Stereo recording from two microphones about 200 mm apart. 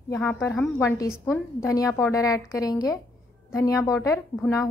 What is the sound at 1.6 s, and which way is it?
A woman's voice, 15° left (ahead or behind).